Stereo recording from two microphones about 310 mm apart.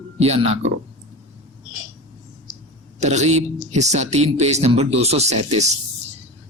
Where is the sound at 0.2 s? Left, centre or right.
Centre.